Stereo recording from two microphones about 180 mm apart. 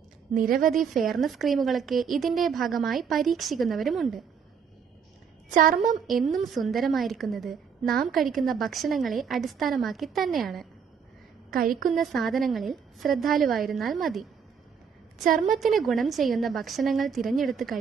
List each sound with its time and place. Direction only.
0.3 s a woman's voice: 50° right (ahead or behind)
0.7 s a woman's voice: centre (ahead or behind)
5.5 s a woman's voice: 45° right (ahead or behind)
5.9 s a woman's voice: centre (ahead or behind)
11.9 s a woman's voice: centre (ahead or behind)
15.2 s a woman's voice: 50° right (ahead or behind)
15.6 s a woman's voice: centre (ahead or behind)